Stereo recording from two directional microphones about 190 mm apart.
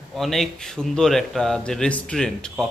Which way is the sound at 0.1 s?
Centre (ahead or behind).